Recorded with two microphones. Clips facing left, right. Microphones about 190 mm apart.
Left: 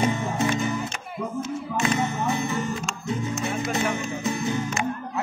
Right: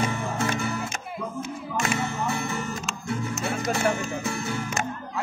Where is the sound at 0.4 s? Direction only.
20° left (ahead or behind).